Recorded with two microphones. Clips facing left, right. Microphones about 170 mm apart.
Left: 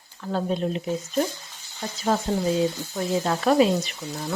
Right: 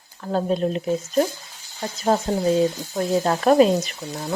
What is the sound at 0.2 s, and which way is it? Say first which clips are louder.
Speech: right 4 dB; 40° right (ahead or behind).